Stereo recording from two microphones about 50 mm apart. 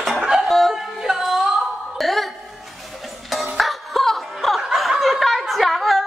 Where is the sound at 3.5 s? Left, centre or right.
Centre.